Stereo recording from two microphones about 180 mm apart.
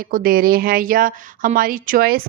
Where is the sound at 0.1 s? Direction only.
55° right (ahead or behind).